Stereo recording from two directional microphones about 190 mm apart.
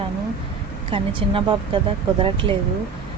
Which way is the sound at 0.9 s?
25° right (ahead or behind).